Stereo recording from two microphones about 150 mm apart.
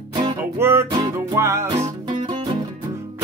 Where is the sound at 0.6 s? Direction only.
15° right (ahead or behind).